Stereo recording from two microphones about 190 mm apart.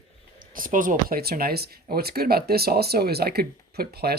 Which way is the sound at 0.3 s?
45° right (ahead or behind).